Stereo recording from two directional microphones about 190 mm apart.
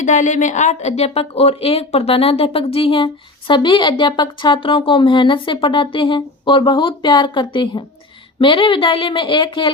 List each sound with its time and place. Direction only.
0.0 s speech: 40° left (ahead or behind); by 9.7 s 25° left (ahead or behind)